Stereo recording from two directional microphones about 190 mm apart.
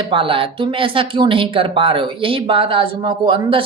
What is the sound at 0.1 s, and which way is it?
A woman's voice, 30° right (ahead or behind).